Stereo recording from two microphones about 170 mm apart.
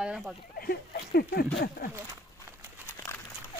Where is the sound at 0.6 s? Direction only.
65° left (ahead or behind).